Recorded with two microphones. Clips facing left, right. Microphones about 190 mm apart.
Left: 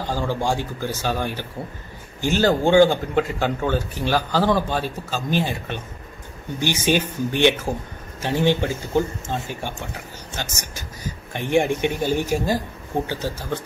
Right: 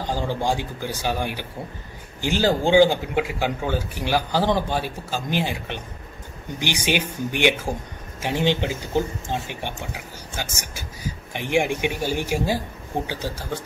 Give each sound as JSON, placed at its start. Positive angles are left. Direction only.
{"t": 0.0, "sound": "speech", "side_deg": -15}